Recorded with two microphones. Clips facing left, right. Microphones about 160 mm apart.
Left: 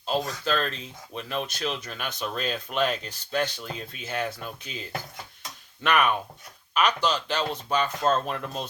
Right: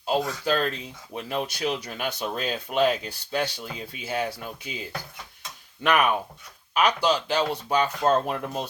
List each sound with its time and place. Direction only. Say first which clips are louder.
0.0 s speech: right 2 dB; 10° right (ahead or behind)